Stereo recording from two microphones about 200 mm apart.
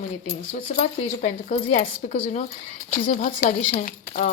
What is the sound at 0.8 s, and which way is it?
Speech, 35° left (ahead or behind).